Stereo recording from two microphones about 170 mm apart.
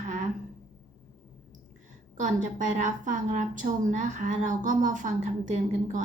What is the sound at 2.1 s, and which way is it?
A woman's voice, 45° right (ahead or behind).